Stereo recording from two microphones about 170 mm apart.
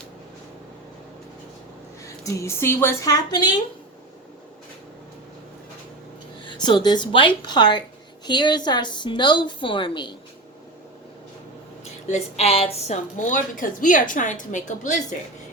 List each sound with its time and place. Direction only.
2.0 s speech: 20° left (ahead or behind)
6.4 s speech: 25° left (ahead or behind)
12.0 s a woman's voice: 40° left (ahead or behind)
13.1 s a woman's voice: 50° left (ahead or behind)